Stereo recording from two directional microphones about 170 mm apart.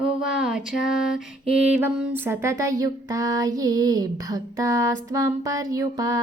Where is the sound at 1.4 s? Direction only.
10° right (ahead or behind).